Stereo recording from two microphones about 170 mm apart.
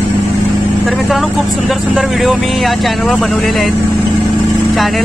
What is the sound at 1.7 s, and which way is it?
Speech, centre (ahead or behind).